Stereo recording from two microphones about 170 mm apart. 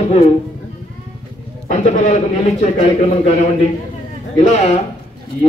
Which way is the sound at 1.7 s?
45° left (ahead or behind).